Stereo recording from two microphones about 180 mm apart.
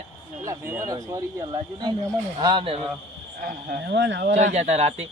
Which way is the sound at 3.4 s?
55° right (ahead or behind).